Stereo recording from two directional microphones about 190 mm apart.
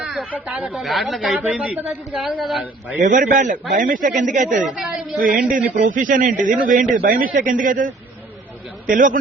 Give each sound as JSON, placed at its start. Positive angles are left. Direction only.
{"t": 0.0, "sound": "a sound", "side_deg": -5}
{"t": 0.4, "sound": "a woman's voice", "side_deg": -5}
{"t": 3.0, "sound": "speech", "side_deg": -45}